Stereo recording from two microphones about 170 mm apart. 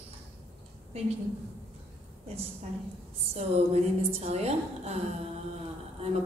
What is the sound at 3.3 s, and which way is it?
A woman's voice, 35° right (ahead or behind).